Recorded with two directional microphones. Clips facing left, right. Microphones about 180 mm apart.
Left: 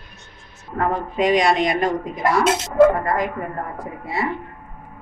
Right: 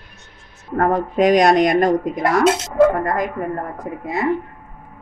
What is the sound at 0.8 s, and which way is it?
A woman's voice, 45° right (ahead or behind).